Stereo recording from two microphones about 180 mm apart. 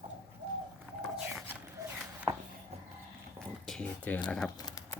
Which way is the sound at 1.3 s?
10° right (ahead or behind).